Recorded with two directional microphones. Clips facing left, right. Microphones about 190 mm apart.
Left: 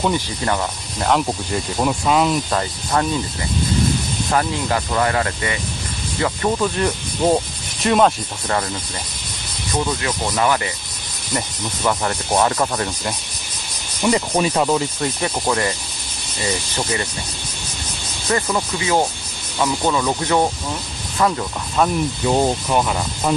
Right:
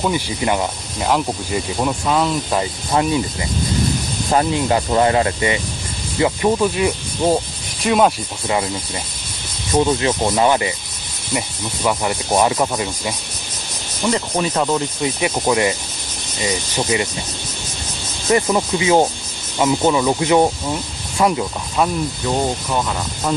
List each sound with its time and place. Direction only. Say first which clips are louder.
0.0 s speech: right 1 dB; 10° right (ahead or behind); by 2.3 s 10° left (ahead or behind)
2.5 s speech: right 2 dB; 15° right (ahead or behind)
4.3 s speech: right 4 dB; 25° right (ahead or behind)
9.8 s speech: right 6 dB; 25° right (ahead or behind)
11.3 s speech: right 1 dB; 10° right (ahead or behind)
14.1 s sanding: left 1 dB; 10° left (ahead or behind)
15.0 s speech: right 2 dB; 5° right (ahead or behind)
16.7 s speech: right 4 dB; 15° right (ahead or behind)
18.3 s speech: right 4 dB; 15° right (ahead or behind)
22.7 s sanding: left 2 dB; 15° left (ahead or behind)